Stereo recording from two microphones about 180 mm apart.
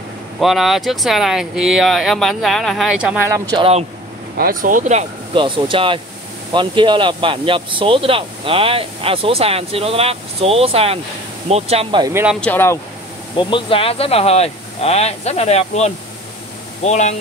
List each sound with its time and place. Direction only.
0.4 s speech: centre (ahead or behind)
3.5 s speech: 30° right (ahead or behind)
4.4 s speech: 50° right (ahead or behind)
5.3 s speech: 30° right (ahead or behind)
12.1 s speech: 10° right (ahead or behind)
12.4 s speech: 10° left (ahead or behind)
13.4 s speech: 30° left (ahead or behind)